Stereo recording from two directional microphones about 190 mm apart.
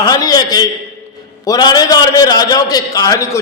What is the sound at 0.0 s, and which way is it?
A man's voice, 20° left (ahead or behind).